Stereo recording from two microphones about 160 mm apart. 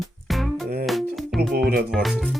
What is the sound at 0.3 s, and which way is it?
Music, centre (ahead or behind).